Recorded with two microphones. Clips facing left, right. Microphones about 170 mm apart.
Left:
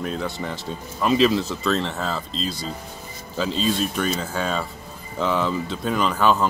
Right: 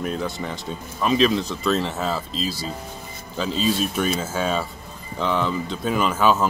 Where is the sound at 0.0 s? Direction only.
5° right (ahead or behind).